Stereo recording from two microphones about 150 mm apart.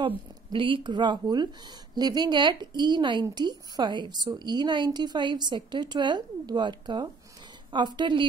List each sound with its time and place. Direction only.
0.0 s speech: 35° right (ahead or behind)